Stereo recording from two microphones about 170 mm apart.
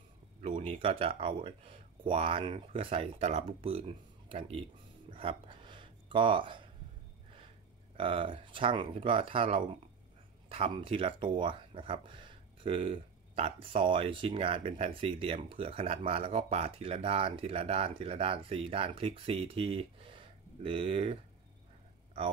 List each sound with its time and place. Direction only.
0.4 s speech: 35° right (ahead or behind)
5.1 s a sound: 30° right (ahead or behind)
7.9 s speech: 30° right (ahead or behind)